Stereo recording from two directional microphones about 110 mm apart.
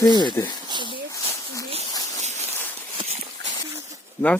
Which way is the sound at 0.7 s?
45° right (ahead or behind).